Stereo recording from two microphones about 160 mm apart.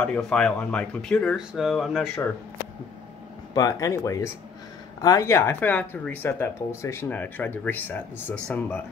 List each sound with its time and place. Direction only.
0.0 s speech: 5° left (ahead or behind)
3.5 s speech: 20° left (ahead or behind)